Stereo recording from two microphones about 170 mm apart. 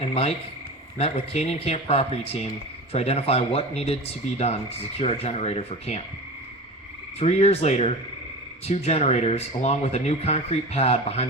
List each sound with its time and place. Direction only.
0.0 s speech: 35° left (ahead or behind)
7.2 s speech: 35° left (ahead or behind)